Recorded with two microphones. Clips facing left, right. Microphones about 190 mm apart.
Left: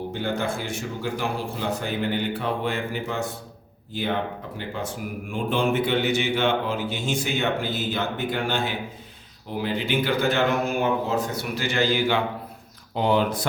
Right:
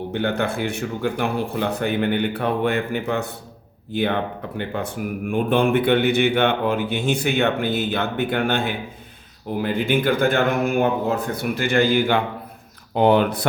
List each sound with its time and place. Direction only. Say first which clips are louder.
0.1 s a man's voice: right 6 dB; 65° right (ahead or behind)